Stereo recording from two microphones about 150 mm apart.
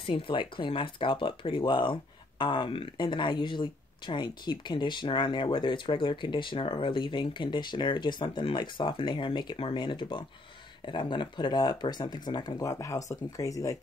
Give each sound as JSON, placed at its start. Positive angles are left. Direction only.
{"t": 0.0, "sound": "speech", "side_deg": 35}